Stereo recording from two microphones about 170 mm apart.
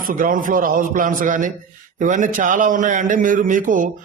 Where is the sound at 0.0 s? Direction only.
55° right (ahead or behind).